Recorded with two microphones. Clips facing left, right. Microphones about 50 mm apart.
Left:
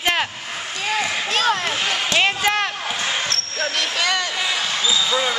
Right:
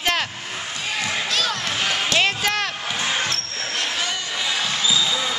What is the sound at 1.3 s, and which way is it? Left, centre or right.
Speech, left.